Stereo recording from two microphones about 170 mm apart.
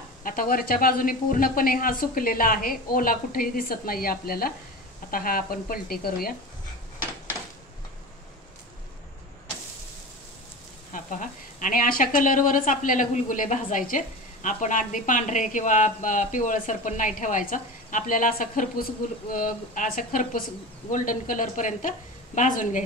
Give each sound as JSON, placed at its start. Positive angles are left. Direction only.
{"t": 0.2, "sound": "speech", "side_deg": 55}
{"t": 10.9, "sound": "speech", "side_deg": 50}